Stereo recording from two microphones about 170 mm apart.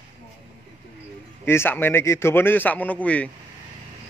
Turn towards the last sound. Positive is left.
turn(degrees=10)  # may be behind; listen again after turning